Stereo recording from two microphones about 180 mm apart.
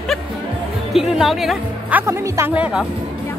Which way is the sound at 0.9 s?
Centre (ahead or behind).